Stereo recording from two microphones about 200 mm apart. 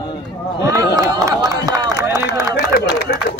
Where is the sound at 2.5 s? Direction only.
55° left (ahead or behind).